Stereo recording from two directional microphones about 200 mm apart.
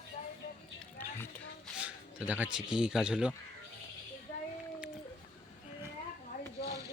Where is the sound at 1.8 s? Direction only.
5° right (ahead or behind).